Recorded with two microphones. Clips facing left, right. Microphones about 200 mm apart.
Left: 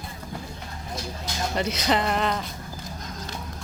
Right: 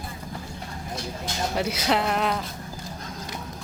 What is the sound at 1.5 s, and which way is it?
Speech, 5° right (ahead or behind).